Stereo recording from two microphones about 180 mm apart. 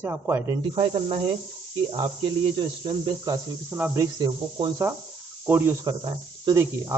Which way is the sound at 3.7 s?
15° right (ahead or behind).